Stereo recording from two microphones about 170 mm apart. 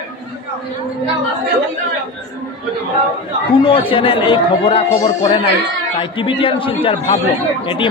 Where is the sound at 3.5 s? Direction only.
30° left (ahead or behind).